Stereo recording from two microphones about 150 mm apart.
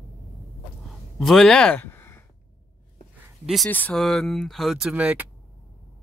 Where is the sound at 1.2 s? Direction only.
Centre (ahead or behind).